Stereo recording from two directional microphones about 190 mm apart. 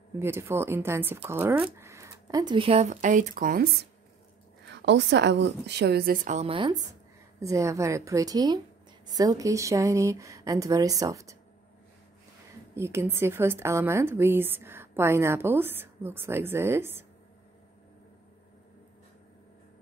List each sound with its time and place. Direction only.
0.2 s a woman's voice: 10° right (ahead or behind); by 3.6 s 45° right (ahead or behind)
4.6 s a woman's voice: 65° right (ahead or behind); by 6.5 s 40° right (ahead or behind)
6.5 s a woman's voice: 20° right (ahead or behind)
12.7 s a woman's voice: 15° right (ahead or behind)